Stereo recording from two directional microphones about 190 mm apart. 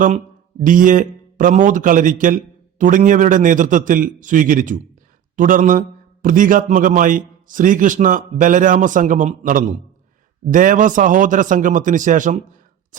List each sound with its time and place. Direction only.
0.6 s a man's voice: 45° right (ahead or behind)